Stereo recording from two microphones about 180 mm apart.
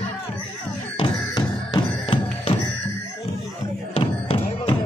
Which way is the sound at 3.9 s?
35° left (ahead or behind).